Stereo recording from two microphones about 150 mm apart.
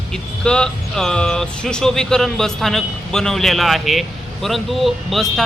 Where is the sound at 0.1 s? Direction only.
5° left (ahead or behind).